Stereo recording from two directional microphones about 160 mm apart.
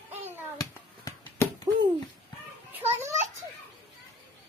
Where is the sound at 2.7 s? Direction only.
15° right (ahead or behind).